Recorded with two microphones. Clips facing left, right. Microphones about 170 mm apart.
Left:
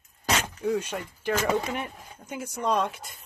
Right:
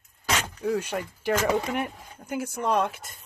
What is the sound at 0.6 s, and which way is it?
Speech, 5° right (ahead or behind).